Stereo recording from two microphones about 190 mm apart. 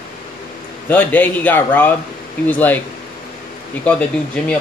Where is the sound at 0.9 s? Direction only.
10° left (ahead or behind).